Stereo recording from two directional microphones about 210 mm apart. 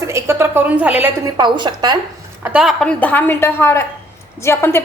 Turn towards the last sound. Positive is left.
turn(degrees=10)  # may be behind; listen again after turning